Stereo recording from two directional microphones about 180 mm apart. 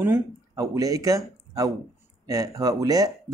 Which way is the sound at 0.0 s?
15° right (ahead or behind).